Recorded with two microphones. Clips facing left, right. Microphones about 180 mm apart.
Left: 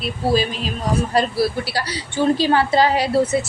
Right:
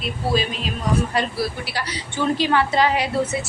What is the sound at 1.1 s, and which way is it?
A woman's voice, 35° left (ahead or behind).